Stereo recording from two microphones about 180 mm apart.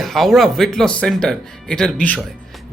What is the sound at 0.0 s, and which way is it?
A man's voice, centre (ahead or behind).